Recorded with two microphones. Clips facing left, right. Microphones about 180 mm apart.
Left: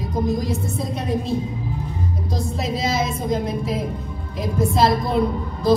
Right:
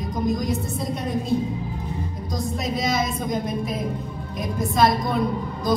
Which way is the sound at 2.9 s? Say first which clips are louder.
Left 3 dB; 30° left (ahead or behind).